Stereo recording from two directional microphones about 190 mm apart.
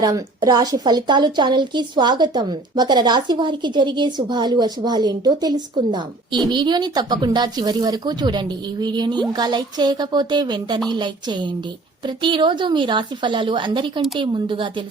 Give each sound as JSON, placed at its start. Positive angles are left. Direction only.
{"t": 0.0, "sound": "a woman's voice", "side_deg": -20}